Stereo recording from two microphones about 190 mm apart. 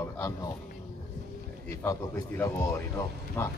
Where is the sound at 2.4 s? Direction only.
15° left (ahead or behind).